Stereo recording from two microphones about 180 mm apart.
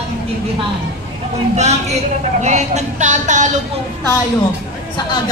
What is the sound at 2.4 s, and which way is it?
A woman's voice, 40° right (ahead or behind).